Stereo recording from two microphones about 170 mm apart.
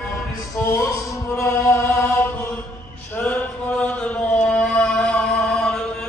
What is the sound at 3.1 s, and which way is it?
Chant, 10° left (ahead or behind).